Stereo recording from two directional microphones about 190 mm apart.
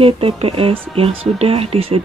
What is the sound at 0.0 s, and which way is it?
Speech, 30° right (ahead or behind).